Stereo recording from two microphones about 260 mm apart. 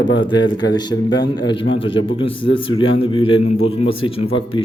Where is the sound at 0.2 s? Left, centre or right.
Centre.